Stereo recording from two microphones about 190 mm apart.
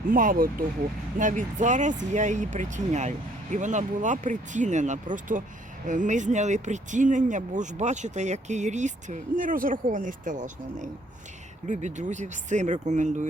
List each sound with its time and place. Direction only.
0.1 s speech: 45° right (ahead or behind)